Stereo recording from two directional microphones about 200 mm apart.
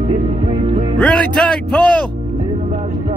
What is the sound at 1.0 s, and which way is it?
Speech, 5° left (ahead or behind).